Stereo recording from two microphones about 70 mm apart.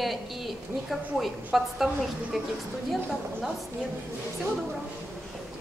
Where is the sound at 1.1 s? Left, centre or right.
Centre.